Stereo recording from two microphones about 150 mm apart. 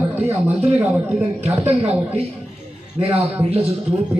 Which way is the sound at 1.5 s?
40° right (ahead or behind).